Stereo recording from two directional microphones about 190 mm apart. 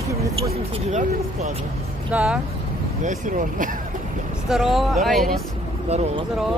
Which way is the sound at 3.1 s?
45° right (ahead or behind).